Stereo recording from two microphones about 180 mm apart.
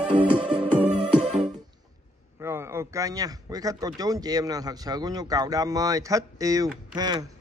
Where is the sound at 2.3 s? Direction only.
15° right (ahead or behind).